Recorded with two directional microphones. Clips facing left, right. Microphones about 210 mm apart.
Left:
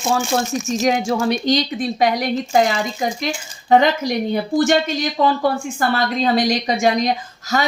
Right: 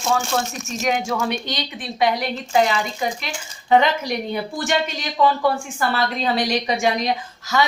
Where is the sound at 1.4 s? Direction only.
40° left (ahead or behind).